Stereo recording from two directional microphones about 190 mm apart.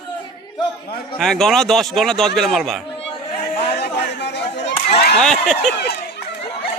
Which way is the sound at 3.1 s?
25° left (ahead or behind).